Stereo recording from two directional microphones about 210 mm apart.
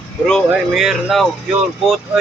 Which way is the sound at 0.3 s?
Centre (ahead or behind).